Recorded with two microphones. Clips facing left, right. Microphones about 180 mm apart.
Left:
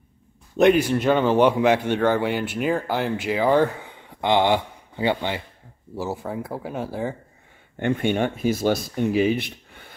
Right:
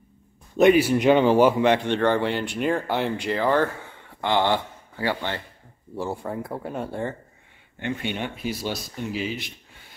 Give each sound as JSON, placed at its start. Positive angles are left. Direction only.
{"t": 0.6, "sound": "speech", "side_deg": -5}
{"t": 5.9, "sound": "speech", "side_deg": 5}
{"t": 7.8, "sound": "speech", "side_deg": 50}